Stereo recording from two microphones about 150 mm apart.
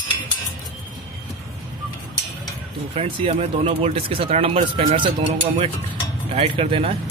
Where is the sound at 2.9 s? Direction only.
35° right (ahead or behind).